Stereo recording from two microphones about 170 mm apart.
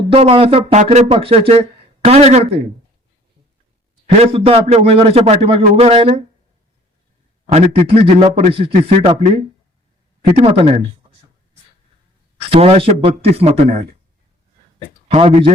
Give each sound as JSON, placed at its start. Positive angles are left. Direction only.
{"t": 0.1, "sound": "a man's voice", "side_deg": -30}
{"t": 4.2, "sound": "a man's voice", "side_deg": -35}
{"t": 7.4, "sound": "a man's voice", "side_deg": -35}
{"t": 12.4, "sound": "a man's voice", "side_deg": -35}
{"t": 15.1, "sound": "a man's voice", "side_deg": -35}